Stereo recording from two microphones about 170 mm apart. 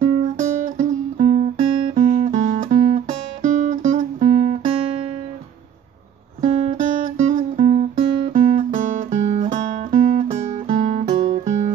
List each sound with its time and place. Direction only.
0.0 s music: 50° right (ahead or behind)
2.0 s guitar: 45° right (ahead or behind)
6.4 s music: 40° right (ahead or behind)
9.5 s guitar: 45° right (ahead or behind)